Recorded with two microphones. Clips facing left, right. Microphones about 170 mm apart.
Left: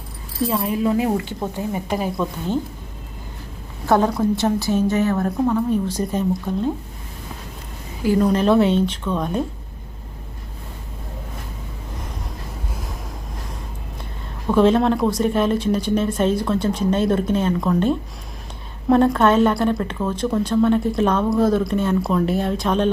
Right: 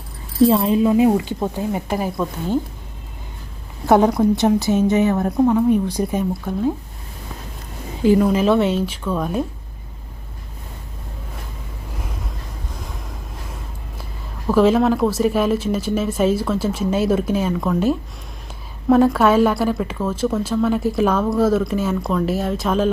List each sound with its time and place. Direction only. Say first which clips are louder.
0.4 s a woman's voice: right 6 dB; 25° right (ahead or behind)
3.8 s a woman's voice: right 3 dB; 15° right (ahead or behind)
8.0 s a woman's voice: right 3 dB; 15° right (ahead or behind)
8.3 s a woman's voice: even; centre (ahead or behind)
14.0 s a woman's voice: right 1 dB; 5° right (ahead or behind)